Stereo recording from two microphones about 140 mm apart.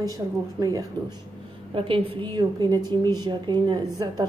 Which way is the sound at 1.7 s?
40° right (ahead or behind).